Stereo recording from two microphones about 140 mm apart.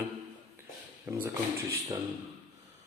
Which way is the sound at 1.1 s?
20° right (ahead or behind).